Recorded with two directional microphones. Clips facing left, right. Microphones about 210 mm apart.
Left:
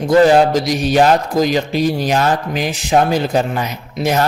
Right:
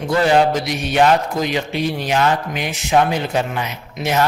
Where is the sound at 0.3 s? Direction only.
40° left (ahead or behind).